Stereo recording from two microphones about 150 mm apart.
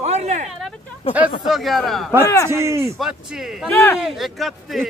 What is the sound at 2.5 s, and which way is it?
Speech, 20° right (ahead or behind).